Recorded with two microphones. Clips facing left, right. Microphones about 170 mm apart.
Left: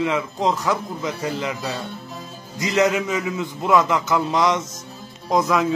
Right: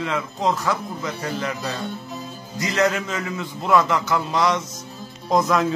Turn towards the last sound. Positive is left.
turn(degrees=5)  # may be behind; listen again after turning